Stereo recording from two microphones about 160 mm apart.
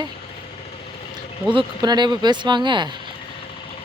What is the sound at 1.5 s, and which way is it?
Speech, 30° right (ahead or behind).